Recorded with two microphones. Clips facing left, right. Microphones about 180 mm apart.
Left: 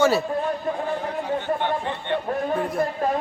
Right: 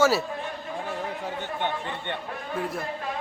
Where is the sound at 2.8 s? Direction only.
50° left (ahead or behind).